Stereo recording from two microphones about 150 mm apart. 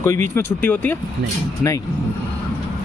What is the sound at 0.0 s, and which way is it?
Speech, 15° left (ahead or behind).